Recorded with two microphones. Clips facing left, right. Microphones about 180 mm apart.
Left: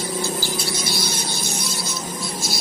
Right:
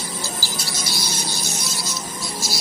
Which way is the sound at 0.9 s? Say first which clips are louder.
Left 3 dB; 55° left (ahead or behind).